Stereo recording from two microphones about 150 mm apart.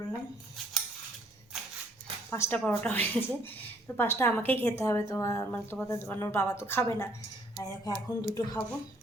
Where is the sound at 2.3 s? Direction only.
15° left (ahead or behind).